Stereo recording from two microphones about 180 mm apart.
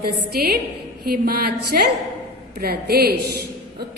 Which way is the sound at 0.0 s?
60° right (ahead or behind).